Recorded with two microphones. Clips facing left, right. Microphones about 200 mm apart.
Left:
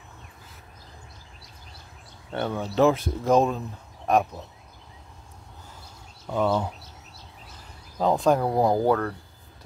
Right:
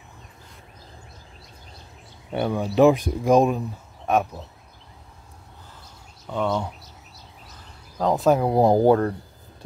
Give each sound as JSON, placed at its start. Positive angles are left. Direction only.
{"t": 2.3, "sound": "speech", "side_deg": -10}
{"t": 4.0, "sound": "a sound", "side_deg": 0}
{"t": 6.2, "sound": "speech", "side_deg": 5}
{"t": 8.0, "sound": "speech", "side_deg": 0}
{"t": 8.5, "sound": "speech", "side_deg": -20}